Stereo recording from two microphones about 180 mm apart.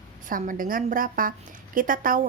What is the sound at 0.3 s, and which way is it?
Speech, 50° right (ahead or behind).